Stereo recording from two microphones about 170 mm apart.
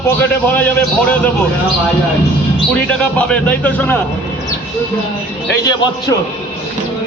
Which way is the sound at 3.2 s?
10° left (ahead or behind).